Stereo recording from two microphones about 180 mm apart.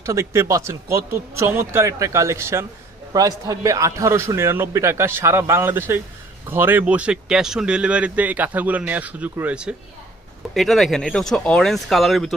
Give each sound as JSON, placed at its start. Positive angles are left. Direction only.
{"t": 0.0, "sound": "speech", "side_deg": -15}